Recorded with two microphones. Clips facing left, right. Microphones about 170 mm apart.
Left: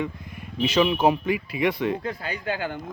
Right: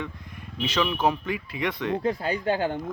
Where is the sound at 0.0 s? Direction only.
10° left (ahead or behind).